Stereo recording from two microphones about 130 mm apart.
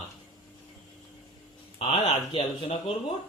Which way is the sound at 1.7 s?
45° left (ahead or behind).